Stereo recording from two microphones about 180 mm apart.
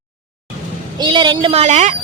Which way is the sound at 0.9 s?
25° right (ahead or behind).